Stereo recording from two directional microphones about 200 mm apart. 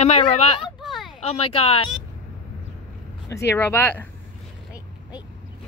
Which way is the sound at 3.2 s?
15° left (ahead or behind).